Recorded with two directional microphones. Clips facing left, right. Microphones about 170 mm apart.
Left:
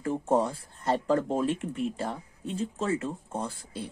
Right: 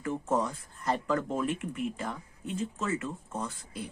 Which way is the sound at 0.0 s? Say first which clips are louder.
Left 4 dB; 30° left (ahead or behind).